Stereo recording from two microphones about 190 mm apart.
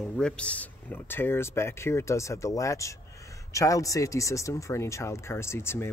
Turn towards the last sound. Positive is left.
turn(degrees=15)  # may be behind; listen again after turning